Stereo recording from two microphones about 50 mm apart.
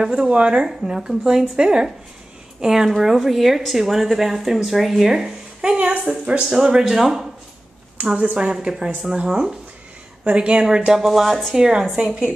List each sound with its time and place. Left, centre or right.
0.0 s a woman's voice: centre
8.4 s a woman's voice: centre
10.9 s a woman's voice: centre
11.5 s a woman's voice: centre